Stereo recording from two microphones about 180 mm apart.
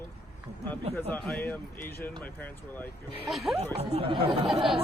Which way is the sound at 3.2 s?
Centre (ahead or behind).